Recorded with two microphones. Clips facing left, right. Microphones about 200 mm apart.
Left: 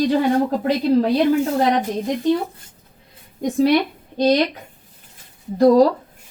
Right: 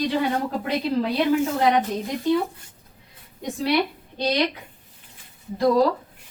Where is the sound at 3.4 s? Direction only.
45° left (ahead or behind).